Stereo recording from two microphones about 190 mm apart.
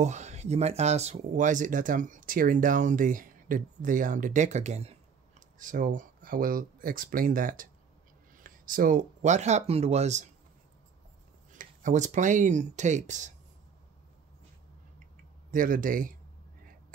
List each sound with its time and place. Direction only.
0.0 s speech: 35° right (ahead or behind)
11.5 s speech: 40° right (ahead or behind)
15.5 s speech: 45° right (ahead or behind)